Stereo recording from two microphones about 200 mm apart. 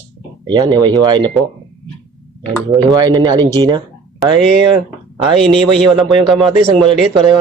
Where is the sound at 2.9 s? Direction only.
20° right (ahead or behind).